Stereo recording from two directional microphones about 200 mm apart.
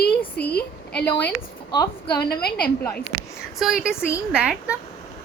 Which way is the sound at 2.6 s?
5° left (ahead or behind).